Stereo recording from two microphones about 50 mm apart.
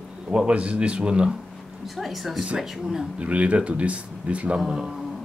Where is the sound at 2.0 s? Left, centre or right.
Centre.